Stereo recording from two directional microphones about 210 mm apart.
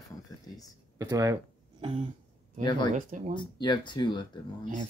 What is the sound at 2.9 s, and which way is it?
Speech, 40° right (ahead or behind).